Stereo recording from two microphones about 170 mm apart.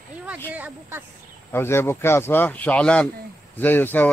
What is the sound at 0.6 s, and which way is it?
Speech, 10° right (ahead or behind).